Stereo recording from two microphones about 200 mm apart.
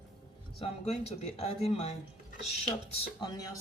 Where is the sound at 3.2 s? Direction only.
20° left (ahead or behind).